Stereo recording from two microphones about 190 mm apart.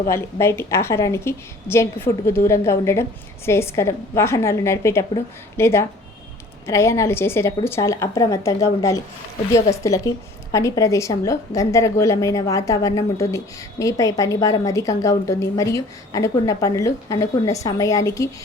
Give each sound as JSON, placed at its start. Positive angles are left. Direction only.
{"t": 0.1, "sound": "a woman's voice", "side_deg": 15}